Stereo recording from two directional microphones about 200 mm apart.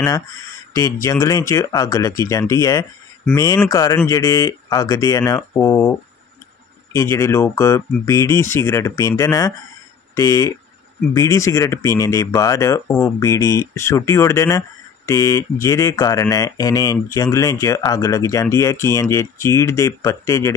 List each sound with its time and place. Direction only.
1.0 s speech: 15° left (ahead or behind)